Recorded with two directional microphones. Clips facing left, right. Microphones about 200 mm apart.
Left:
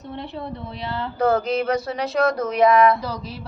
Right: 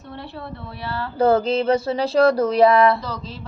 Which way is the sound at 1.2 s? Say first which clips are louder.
Right 3 dB; 30° right (ahead or behind).